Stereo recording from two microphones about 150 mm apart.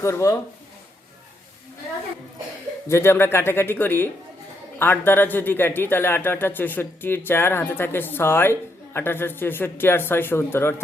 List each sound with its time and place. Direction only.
0.0 s speech: 20° left (ahead or behind)
2.8 s speech: 15° left (ahead or behind)